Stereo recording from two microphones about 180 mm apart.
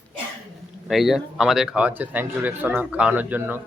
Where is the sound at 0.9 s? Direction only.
Centre (ahead or behind).